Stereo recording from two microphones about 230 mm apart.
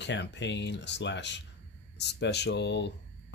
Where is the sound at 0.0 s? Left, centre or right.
Left.